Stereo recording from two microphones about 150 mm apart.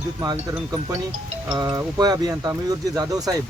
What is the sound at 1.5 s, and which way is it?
Speech, 25° right (ahead or behind).